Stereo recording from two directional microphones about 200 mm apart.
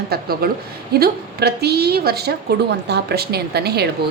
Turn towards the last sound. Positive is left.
turn(degrees=-55)  # may be behind; listen again after turning